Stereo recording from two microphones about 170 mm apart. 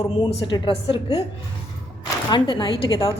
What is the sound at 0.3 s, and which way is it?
Speech, 30° left (ahead or behind).